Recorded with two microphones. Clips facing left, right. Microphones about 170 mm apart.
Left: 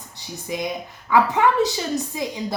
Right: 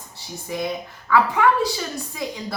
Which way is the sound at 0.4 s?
15° left (ahead or behind).